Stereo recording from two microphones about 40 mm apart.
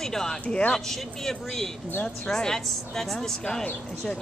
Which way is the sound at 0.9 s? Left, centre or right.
Centre.